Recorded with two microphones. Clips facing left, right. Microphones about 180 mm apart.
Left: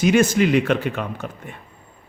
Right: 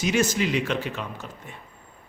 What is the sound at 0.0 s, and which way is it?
A man's voice, 55° left (ahead or behind).